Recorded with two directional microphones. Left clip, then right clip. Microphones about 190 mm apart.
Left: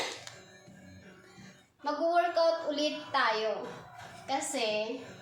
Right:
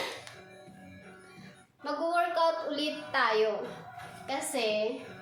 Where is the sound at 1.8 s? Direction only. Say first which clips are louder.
Left 1 dB; 15° right (ahead or behind).